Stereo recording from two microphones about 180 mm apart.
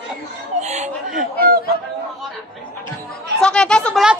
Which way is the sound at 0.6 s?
40° right (ahead or behind).